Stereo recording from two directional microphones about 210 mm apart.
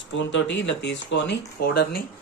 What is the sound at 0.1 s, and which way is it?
Speech, 60° left (ahead or behind).